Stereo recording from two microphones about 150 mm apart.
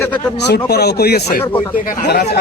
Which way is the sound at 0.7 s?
90° left.